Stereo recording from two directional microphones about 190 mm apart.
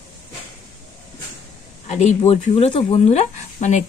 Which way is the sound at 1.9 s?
35° left (ahead or behind).